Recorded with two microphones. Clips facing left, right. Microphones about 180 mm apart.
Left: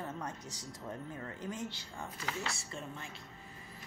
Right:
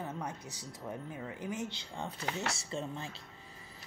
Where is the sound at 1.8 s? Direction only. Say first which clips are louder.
Right 4 dB; 25° right (ahead or behind).